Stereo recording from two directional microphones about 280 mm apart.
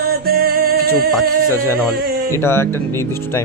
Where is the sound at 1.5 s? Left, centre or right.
Centre.